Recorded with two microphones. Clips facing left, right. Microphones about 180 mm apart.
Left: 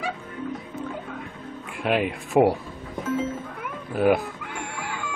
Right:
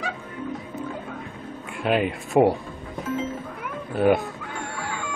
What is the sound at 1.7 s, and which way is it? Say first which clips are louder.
Speech: right 1 dB; centre (ahead or behind).